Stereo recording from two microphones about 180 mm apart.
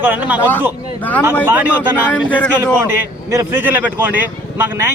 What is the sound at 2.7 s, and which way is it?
A man's voice, 10° right (ahead or behind).